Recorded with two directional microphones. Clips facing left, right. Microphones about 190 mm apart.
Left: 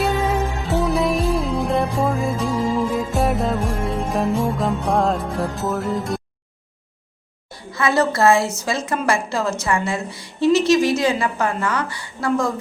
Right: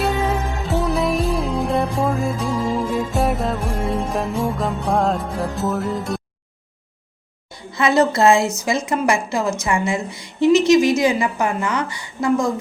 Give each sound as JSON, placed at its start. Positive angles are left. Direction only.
{"t": 0.0, "sound": "music", "side_deg": 0}
{"t": 7.7, "sound": "a woman's voice", "side_deg": -20}